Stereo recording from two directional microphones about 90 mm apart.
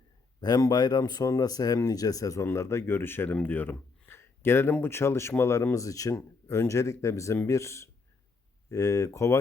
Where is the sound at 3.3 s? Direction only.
20° left (ahead or behind).